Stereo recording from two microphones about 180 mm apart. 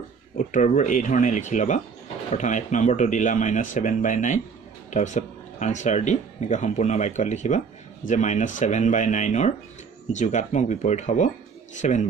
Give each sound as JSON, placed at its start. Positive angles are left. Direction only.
{"t": 0.4, "sound": "speech", "side_deg": 45}